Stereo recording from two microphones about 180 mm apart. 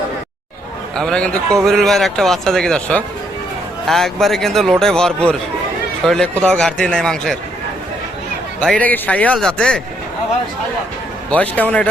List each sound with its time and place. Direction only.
0.9 s speech: 5° left (ahead or behind)
8.6 s speech: 5° left (ahead or behind)
11.3 s a man's voice: 10° left (ahead or behind)